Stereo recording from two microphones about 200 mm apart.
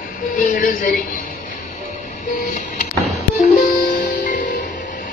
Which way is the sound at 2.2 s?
40° left (ahead or behind).